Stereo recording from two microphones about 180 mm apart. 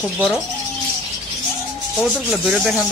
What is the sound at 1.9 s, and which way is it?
Speech, centre (ahead or behind).